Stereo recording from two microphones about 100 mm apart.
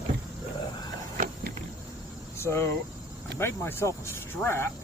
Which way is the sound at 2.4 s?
25° left (ahead or behind).